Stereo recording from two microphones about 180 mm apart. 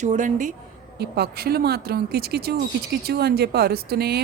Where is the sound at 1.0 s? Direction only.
65° right (ahead or behind).